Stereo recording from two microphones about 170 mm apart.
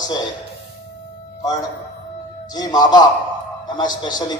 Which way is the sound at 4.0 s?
25° left (ahead or behind).